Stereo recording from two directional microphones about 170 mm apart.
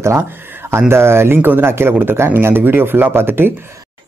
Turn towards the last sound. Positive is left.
turn(degrees=-15)  # may be behind; listen again after turning